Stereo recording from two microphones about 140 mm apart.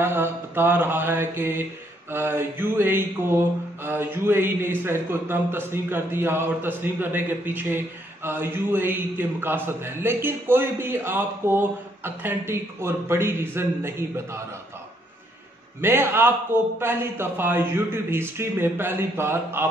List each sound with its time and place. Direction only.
0.0 s a man's voice: 15° right (ahead or behind)
15.8 s a man's voice: 15° right (ahead or behind)